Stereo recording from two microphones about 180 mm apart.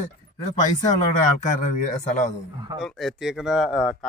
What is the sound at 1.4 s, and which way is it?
Speech, 45° left (ahead or behind).